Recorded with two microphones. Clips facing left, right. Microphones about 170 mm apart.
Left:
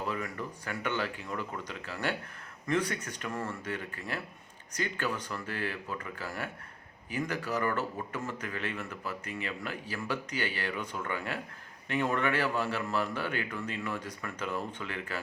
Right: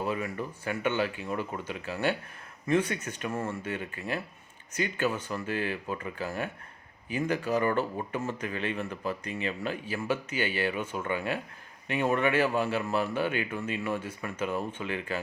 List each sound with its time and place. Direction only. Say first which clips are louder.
0.0 s speech: right 4 dB; 15° right (ahead or behind)
7.9 s speech: right 4 dB; 25° right (ahead or behind)
10.7 s speech: right 4 dB; 25° right (ahead or behind)